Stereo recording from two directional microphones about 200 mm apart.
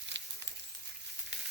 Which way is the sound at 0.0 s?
60° right (ahead or behind).